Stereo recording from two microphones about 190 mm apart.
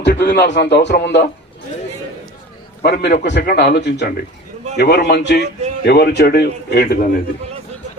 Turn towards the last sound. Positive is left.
turn(degrees=55)  # may be behind; listen again after turning